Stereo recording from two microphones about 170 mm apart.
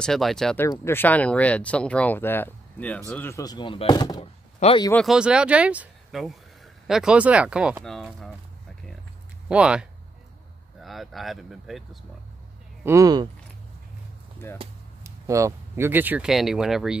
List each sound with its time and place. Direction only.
0.0 s speech: centre (ahead or behind)
0.7 s speech: 15° left (ahead or behind)
4.2 s speech: 35° left (ahead or behind)
4.9 s speech: centre (ahead or behind)
9.5 s speech: 5° right (ahead or behind)
12.8 s speech: 20° right (ahead or behind)
15.0 s speech: 20° right (ahead or behind)